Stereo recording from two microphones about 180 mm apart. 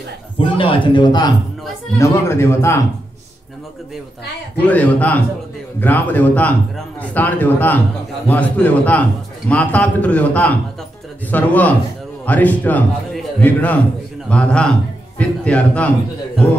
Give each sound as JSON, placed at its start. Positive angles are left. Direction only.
{"t": 0.4, "sound": "speech", "side_deg": 30}
{"t": 2.0, "sound": "a man's voice", "side_deg": 15}
{"t": 4.6, "sound": "a man's voice", "side_deg": 10}